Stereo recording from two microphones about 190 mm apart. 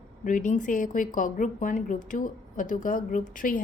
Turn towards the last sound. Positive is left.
turn(degrees=45)  # may be behind; listen again after turning